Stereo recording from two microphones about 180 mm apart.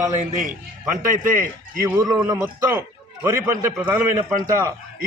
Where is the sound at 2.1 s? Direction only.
10° right (ahead or behind).